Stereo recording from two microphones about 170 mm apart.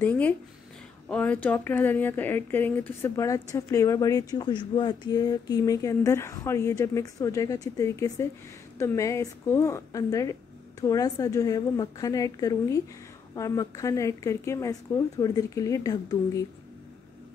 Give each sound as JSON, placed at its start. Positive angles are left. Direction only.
{"t": 0.0, "sound": "a woman's voice", "side_deg": 10}